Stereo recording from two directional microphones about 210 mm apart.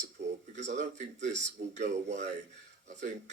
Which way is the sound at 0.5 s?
35° right (ahead or behind).